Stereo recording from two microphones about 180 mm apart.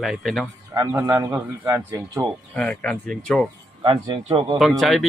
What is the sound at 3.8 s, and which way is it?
Speech, 25° right (ahead or behind).